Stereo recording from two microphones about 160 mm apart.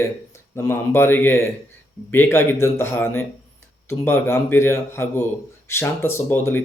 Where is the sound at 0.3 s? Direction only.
15° left (ahead or behind).